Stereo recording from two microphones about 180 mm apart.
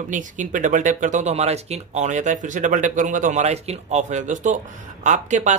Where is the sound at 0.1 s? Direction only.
45° right (ahead or behind).